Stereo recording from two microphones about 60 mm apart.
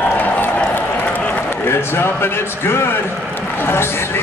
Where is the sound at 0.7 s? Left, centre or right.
Left.